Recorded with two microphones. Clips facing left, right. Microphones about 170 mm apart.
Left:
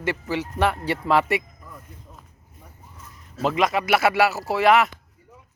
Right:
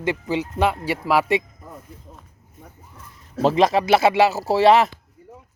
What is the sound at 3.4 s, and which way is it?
Speech, 30° right (ahead or behind).